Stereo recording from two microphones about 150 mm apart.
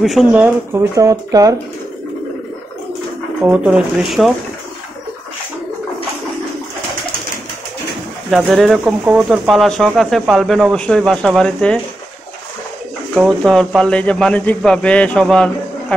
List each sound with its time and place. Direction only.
0.0 s speech: 5° right (ahead or behind)
0.9 s speech: 25° right (ahead or behind)
3.4 s speech: 5° right (ahead or behind)
8.5 s speech: centre (ahead or behind)
8.8 s speech: 10° right (ahead or behind)
13.1 s speech: 5° right (ahead or behind)
13.5 s speech: 5° left (ahead or behind)